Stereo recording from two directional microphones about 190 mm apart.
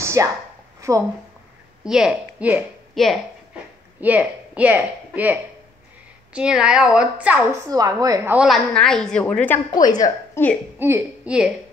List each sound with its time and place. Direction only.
0.0 s a sound: 15° right (ahead or behind)
1.9 s a woman's voice: 5° right (ahead or behind)
7.7 s speech: 20° right (ahead or behind)
8.5 s a woman's voice: centre (ahead or behind)
9.8 s a woman's voice: 20° left (ahead or behind)
10.8 s a woman's voice: 10° right (ahead or behind)